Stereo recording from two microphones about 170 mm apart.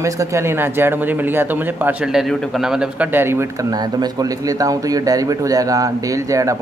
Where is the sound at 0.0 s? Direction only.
15° right (ahead or behind).